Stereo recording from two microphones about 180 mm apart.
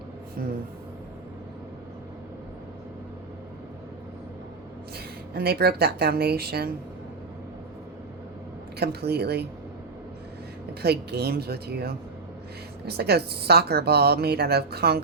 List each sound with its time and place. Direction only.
0.4 s speech: 55° right (ahead or behind)
5.3 s a woman's voice: 60° right (ahead or behind)
8.8 s a woman's voice: 65° right (ahead or behind)
10.8 s a woman's voice: 65° right (ahead or behind)